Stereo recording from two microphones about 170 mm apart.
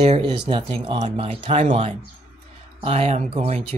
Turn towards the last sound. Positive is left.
turn(degrees=-35)  # may be behind; listen again after turning